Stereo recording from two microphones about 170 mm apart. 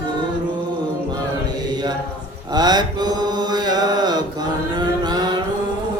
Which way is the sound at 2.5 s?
25° right (ahead or behind).